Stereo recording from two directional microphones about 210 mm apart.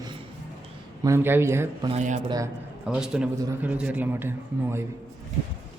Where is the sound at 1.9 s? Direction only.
35° right (ahead or behind).